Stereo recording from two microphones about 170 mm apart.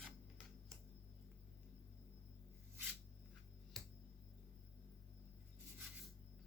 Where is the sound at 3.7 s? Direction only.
Centre (ahead or behind).